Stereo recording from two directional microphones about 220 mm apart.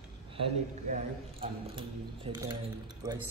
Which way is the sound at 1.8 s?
20° right (ahead or behind).